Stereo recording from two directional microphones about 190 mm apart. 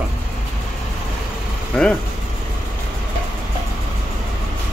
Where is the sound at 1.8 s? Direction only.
Centre (ahead or behind).